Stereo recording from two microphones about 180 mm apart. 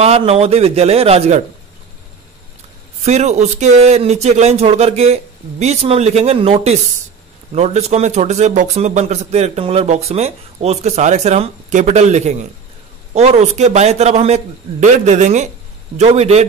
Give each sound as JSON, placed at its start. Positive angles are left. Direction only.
{"t": 0.0, "sound": "speech", "side_deg": -35}
{"t": 3.1, "sound": "speech", "side_deg": -40}